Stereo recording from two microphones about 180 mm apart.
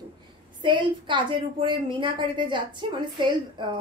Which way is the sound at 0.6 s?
25° right (ahead or behind).